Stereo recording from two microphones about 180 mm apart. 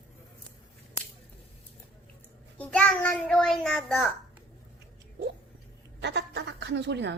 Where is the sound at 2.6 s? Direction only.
5° left (ahead or behind).